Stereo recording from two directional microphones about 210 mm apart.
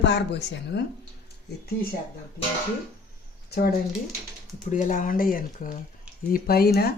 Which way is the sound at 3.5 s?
50° left (ahead or behind).